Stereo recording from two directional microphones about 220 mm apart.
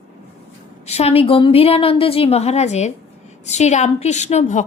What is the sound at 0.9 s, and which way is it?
A woman's voice, 30° left (ahead or behind).